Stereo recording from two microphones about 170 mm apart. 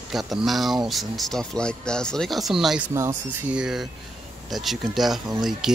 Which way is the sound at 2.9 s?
15° right (ahead or behind).